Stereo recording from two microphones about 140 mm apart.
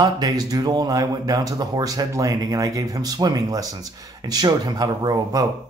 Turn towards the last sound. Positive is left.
turn(degrees=-30)  # may be behind; listen again after turning